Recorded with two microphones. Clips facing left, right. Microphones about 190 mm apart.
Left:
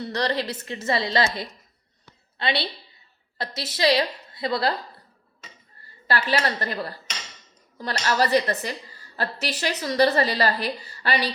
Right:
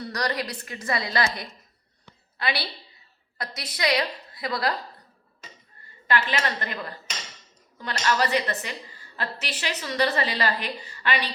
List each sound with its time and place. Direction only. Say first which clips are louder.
0.0 s a woman's voice: left 3 dB; 25° left (ahead or behind)
5.8 s a woman's voice: even; 35° left (ahead or behind)